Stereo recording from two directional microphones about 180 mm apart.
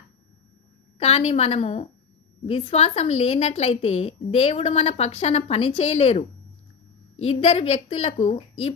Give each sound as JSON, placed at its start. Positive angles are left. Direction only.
{"t": 0.9, "sound": "a woman's voice", "side_deg": 35}